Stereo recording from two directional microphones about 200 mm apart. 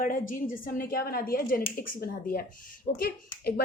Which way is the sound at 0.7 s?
45° left (ahead or behind).